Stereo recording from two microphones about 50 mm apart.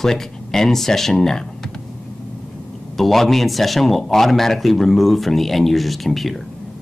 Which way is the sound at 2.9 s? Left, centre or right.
Centre.